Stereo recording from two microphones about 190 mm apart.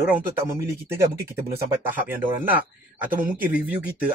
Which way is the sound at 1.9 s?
10° right (ahead or behind).